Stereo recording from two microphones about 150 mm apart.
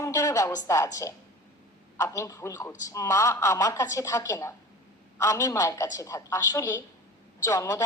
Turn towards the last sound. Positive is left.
turn(degrees=20)  # may be behind; listen again after turning